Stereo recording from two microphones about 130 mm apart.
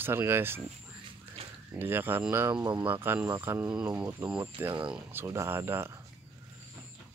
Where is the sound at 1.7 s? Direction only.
15° right (ahead or behind).